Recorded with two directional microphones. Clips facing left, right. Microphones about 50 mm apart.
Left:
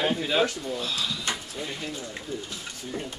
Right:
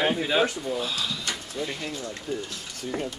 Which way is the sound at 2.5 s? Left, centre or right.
Right.